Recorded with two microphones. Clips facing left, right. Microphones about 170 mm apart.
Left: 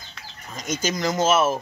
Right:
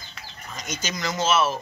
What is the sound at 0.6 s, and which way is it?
Speech, 45° left (ahead or behind).